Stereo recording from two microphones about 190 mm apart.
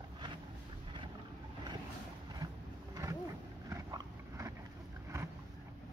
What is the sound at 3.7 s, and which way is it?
Biting, 20° right (ahead or behind).